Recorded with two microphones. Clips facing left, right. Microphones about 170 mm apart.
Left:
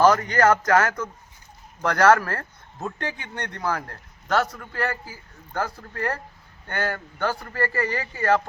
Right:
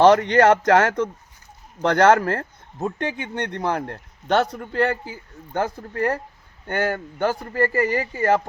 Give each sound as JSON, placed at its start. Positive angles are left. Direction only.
{"t": 0.0, "sound": "a man's voice", "side_deg": -25}